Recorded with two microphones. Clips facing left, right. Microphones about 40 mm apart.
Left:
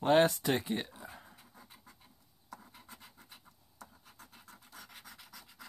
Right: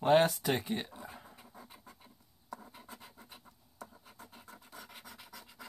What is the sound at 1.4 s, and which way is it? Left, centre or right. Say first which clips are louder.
Dog: right 4 dB; centre.